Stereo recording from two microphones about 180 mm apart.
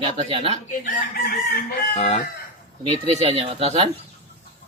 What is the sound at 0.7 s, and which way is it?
Chicken, 50° left (ahead or behind).